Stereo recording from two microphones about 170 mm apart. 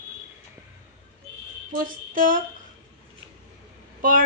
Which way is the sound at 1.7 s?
55° right (ahead or behind).